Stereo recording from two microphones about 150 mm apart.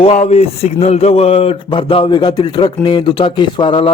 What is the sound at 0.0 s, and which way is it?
A man's voice, 45° left (ahead or behind).